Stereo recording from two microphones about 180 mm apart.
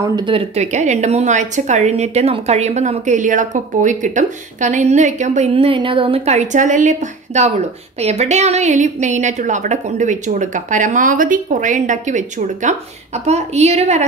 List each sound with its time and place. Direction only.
0.1 s speech: 25° right (ahead or behind)
0.6 s a woman's voice: 40° right (ahead or behind)